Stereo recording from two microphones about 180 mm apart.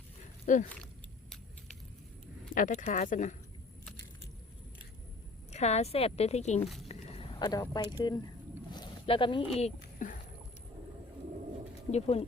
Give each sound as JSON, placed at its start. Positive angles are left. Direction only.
{"t": 0.4, "sound": "speech", "side_deg": 45}
{"t": 2.6, "sound": "speech", "side_deg": 45}
{"t": 5.5, "sound": "a woman's voice", "side_deg": 40}
{"t": 8.7, "sound": "a sound", "side_deg": 25}
{"t": 11.9, "sound": "a woman's voice", "side_deg": 35}